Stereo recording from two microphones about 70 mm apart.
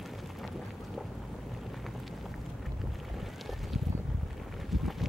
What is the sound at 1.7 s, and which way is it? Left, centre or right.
Vehicle, centre.